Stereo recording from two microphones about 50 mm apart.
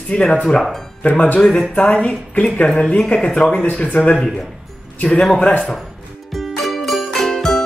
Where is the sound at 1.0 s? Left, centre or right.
Left.